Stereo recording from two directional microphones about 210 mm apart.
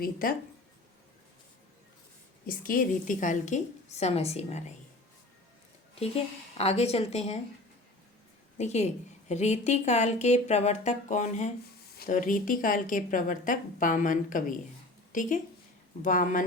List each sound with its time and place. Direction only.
0.0 s speech: 45° left (ahead or behind)
2.5 s a woman's voice: 40° left (ahead or behind)
6.6 s a woman's voice: 30° left (ahead or behind)
8.5 s a woman's voice: 30° left (ahead or behind)